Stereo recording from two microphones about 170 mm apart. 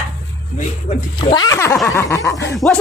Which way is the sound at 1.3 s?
20° left (ahead or behind).